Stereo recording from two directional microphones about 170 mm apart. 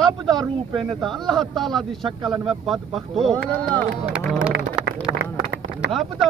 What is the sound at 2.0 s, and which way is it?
Speech, 30° right (ahead or behind).